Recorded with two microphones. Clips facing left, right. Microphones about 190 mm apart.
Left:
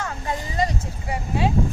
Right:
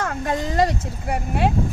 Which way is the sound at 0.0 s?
65° right (ahead or behind).